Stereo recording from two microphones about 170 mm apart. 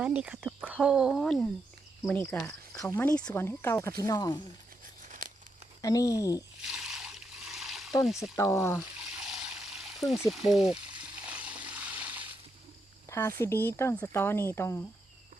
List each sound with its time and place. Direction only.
0.0 s speech: 10° right (ahead or behind); by 4.4 s 20° left (ahead or behind)
5.0 s tearing: 50° right (ahead or behind)
5.8 s speech: 20° left (ahead or behind)
6.6 s a sound: 5° right (ahead or behind)
8.0 s speech: centre (ahead or behind)
8.4 s speech: 15° left (ahead or behind)
9.2 s a sound: 5° right (ahead or behind)
10.5 s speech: 5° right (ahead or behind)
11.3 s water: 10° right (ahead or behind)
13.1 s a sound: 15° left (ahead or behind)
13.4 s speech: 15° left (ahead or behind)